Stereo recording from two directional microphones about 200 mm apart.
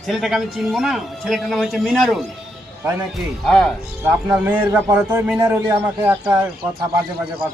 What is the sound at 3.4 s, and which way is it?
A man's voice, centre (ahead or behind).